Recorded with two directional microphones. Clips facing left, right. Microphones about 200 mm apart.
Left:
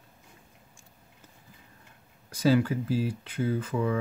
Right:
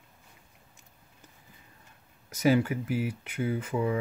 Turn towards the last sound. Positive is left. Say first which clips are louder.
# left 1 dB
turn(degrees=-20)  # may be behind; listen again after turning